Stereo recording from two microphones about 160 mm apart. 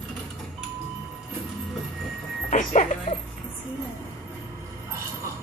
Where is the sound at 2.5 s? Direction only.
55° left (ahead or behind).